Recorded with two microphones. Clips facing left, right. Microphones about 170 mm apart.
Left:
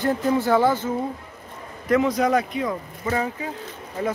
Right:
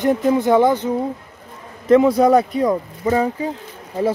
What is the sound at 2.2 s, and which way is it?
Speech, 35° right (ahead or behind).